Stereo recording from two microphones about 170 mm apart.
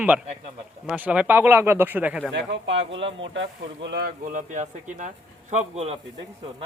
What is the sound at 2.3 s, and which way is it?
Speech, 90° right.